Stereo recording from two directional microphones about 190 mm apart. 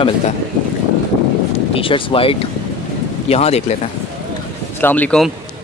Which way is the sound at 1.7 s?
30° left (ahead or behind).